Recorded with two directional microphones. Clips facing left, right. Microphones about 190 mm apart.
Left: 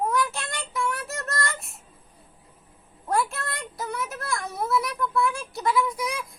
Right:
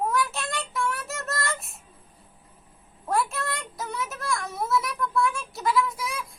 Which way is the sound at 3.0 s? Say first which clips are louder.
Even; centre (ahead or behind).